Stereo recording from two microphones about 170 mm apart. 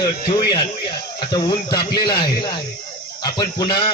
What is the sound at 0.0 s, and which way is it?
A man's voice, 25° left (ahead or behind).